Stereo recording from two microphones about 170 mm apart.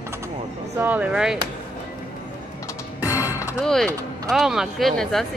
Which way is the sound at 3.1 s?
10° right (ahead or behind).